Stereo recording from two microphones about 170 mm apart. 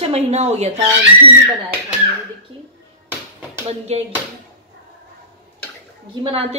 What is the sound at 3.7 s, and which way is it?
Speech, 40° right (ahead or behind).